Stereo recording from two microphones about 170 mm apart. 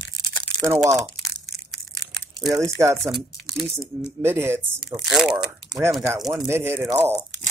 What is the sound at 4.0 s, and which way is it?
Speech, 15° right (ahead or behind).